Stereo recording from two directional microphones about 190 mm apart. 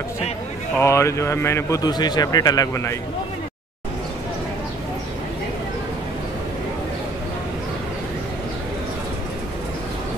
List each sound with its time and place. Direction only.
0.7 s a man's voice: 15° left (ahead or behind)